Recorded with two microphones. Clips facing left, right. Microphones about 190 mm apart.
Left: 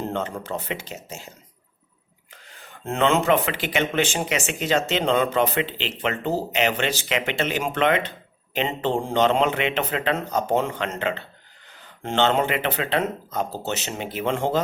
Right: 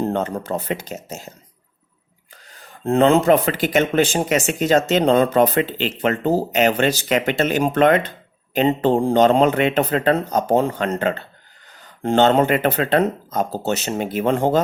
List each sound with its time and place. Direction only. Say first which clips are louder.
0.0 s speech: right 6 dB; 40° right (ahead or behind)
2.3 s speech: right 2 dB; 35° right (ahead or behind)